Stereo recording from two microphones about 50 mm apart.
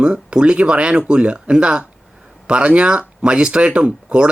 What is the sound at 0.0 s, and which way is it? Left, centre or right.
Speech, centre.